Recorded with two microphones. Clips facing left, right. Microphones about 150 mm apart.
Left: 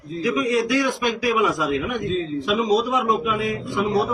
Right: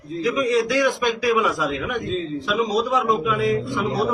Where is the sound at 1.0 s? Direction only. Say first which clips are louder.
Even; 15° left (ahead or behind).